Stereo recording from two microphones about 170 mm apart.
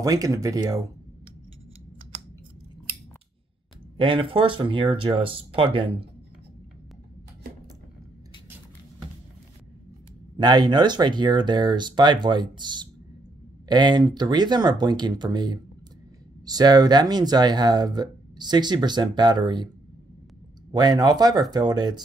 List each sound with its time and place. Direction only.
0.0 s speech: 20° right (ahead or behind)
3.9 s speech: 30° right (ahead or behind)
10.3 s speech: 25° right (ahead or behind)
20.7 s speech: 25° right (ahead or behind)